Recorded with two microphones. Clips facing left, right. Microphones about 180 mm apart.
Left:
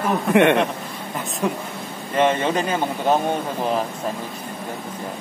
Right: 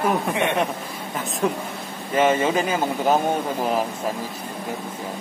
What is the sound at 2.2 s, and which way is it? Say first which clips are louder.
Speech: even; 5° right (ahead or behind).